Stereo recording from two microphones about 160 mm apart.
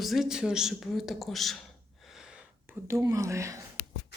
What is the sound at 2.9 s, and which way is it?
Speech, 20° right (ahead or behind).